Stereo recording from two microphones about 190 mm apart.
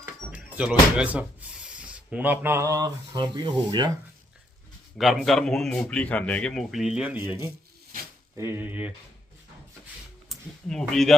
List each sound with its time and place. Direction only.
0.3 s speech: 5° right (ahead or behind); by 3.9 s 20° right (ahead or behind)
4.9 s speech: centre (ahead or behind)
7.9 s snake: 45° right (ahead or behind)
8.4 s speech: 10° right (ahead or behind)
10.2 s speech: centre (ahead or behind)